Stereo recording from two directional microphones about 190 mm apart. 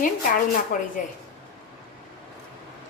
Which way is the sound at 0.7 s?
45° left (ahead or behind).